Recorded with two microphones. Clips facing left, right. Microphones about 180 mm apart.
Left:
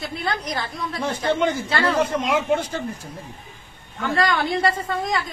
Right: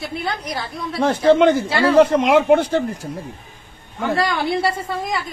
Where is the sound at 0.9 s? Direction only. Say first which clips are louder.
Right 9 dB; 70° right (ahead or behind).